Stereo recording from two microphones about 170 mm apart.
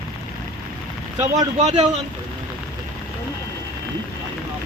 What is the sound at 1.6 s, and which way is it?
Speech, 40° right (ahead or behind).